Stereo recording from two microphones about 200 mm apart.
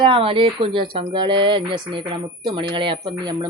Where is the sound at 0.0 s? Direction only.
25° right (ahead or behind).